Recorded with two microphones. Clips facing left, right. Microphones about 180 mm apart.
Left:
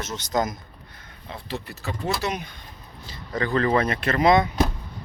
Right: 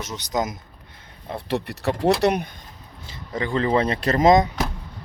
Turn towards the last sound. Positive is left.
turn(degrees=-40)  # may be behind; listen again after turning